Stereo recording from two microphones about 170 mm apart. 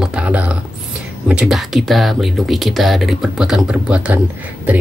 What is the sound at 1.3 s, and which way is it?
Speech, centre (ahead or behind).